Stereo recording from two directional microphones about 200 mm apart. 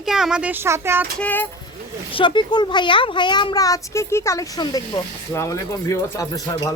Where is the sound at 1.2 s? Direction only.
10° left (ahead or behind).